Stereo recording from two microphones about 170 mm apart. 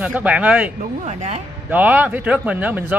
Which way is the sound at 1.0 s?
40° right (ahead or behind).